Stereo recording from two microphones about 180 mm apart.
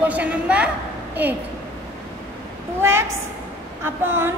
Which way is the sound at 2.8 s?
15° right (ahead or behind).